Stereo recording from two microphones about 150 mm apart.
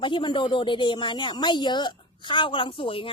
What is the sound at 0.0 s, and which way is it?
A woman's voice, 30° left (ahead or behind).